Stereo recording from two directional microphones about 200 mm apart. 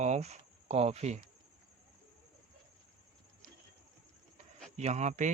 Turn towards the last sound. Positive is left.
turn(degrees=-35)  # may be behind; listen again after turning